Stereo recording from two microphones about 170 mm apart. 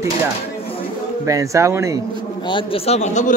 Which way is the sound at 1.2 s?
20° right (ahead or behind).